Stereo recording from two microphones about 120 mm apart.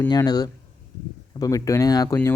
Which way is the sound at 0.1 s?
35° left (ahead or behind).